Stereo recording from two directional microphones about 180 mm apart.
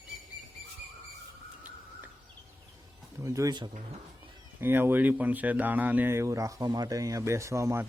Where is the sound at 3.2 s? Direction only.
15° right (ahead or behind).